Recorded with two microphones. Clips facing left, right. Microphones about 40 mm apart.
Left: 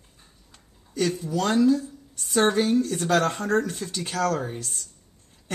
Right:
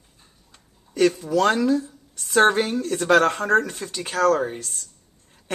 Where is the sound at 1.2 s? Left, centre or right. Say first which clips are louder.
Right 2 dB; right.